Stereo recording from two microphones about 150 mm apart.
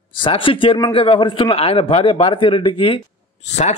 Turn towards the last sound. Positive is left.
turn(degrees=50)  # may be behind; listen again after turning